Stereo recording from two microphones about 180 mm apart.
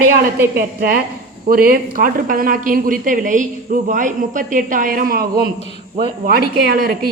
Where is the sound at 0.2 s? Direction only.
55° right (ahead or behind).